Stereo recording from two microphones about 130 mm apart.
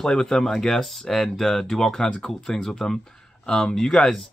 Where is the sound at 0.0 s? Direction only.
5° left (ahead or behind).